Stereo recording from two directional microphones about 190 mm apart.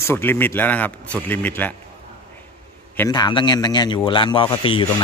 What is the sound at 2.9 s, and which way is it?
Speech, 20° left (ahead or behind).